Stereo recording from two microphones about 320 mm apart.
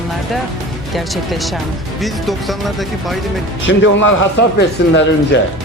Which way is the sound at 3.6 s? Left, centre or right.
Left.